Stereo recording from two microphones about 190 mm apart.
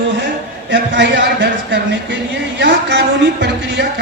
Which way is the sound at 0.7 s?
70° right (ahead or behind).